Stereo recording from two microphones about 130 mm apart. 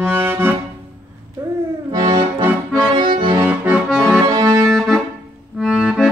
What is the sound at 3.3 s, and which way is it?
Accordion, 10° right (ahead or behind).